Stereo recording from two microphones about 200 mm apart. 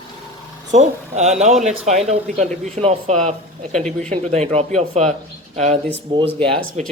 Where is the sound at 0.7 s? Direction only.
35° right (ahead or behind).